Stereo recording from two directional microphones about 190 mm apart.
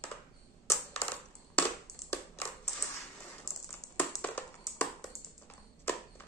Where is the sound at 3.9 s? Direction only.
10° left (ahead or behind).